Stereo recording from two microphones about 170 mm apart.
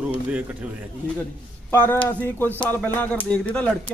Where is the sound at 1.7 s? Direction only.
15° left (ahead or behind).